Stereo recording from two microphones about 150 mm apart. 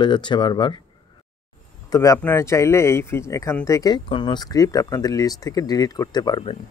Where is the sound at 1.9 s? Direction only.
25° left (ahead or behind).